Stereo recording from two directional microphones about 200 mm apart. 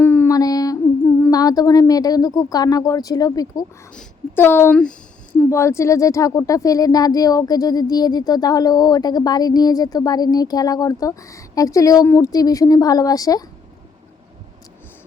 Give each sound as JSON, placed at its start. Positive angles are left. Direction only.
{"t": 0.0, "sound": "mantra", "side_deg": 10}
{"t": 1.2, "sound": "speech", "side_deg": 20}